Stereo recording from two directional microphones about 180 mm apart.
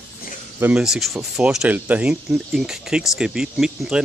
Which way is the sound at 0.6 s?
5° right (ahead or behind).